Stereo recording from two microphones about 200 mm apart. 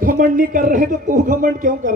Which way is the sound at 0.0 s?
45° right (ahead or behind).